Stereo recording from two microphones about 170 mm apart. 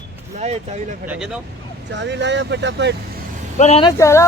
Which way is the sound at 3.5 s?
40° left (ahead or behind).